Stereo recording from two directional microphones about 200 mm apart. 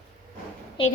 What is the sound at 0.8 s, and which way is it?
Speech, 25° left (ahead or behind).